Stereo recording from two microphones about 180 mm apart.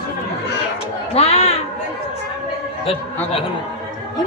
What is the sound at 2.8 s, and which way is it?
Speech, 30° left (ahead or behind).